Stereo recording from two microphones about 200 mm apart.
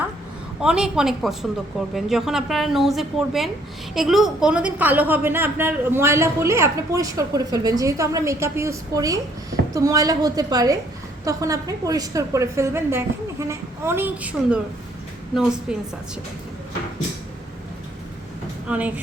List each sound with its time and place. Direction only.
0.6 s a woman's voice: 5° right (ahead or behind)
15.7 s a woman's voice: 5° right (ahead or behind)
18.7 s a woman's voice: 10° right (ahead or behind)